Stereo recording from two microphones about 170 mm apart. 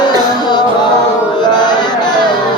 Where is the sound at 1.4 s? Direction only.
25° left (ahead or behind).